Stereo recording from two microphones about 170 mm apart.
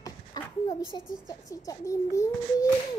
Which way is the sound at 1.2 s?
20° left (ahead or behind).